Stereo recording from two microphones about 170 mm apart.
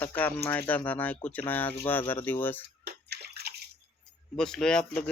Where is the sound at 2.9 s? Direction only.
75° right (ahead or behind).